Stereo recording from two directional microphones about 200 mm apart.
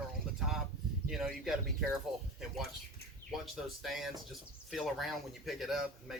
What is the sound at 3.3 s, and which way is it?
Speech, centre (ahead or behind).